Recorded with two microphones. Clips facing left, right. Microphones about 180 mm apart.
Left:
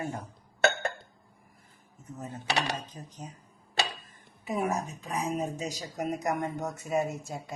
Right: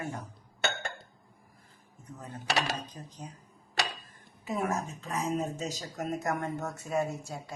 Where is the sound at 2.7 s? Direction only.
10° left (ahead or behind).